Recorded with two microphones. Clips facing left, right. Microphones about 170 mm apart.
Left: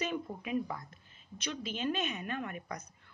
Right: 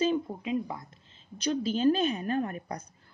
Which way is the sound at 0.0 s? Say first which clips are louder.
Right 9 dB; 25° right (ahead or behind).